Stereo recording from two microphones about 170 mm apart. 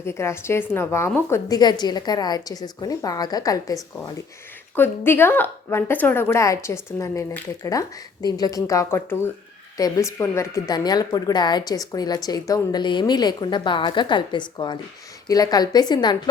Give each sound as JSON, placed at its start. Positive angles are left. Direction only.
{"t": 0.0, "sound": "a woman's voice", "side_deg": 15}